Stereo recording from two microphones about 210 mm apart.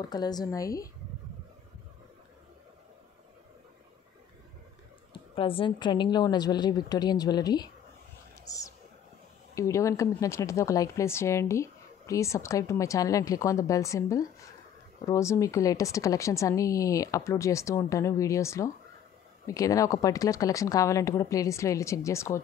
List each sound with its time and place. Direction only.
0.1 s a woman's voice: 20° left (ahead or behind)
5.1 s a woman's voice: 25° left (ahead or behind)